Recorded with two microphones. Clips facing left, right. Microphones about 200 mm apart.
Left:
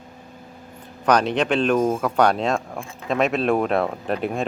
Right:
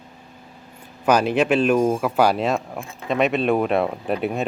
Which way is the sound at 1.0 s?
5° right (ahead or behind).